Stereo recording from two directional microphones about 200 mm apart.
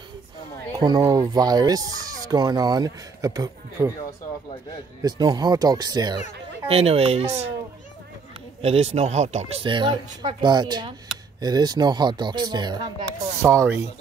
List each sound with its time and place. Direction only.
0.7 s speech: 20° right (ahead or behind)
5.0 s speech: 20° right (ahead or behind)
8.5 s speech: 30° right (ahead or behind); by 13.8 s 15° right (ahead or behind)